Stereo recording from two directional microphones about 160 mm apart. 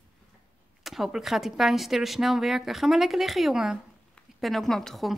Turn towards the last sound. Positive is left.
turn(degrees=0)  # may be behind; listen again after turning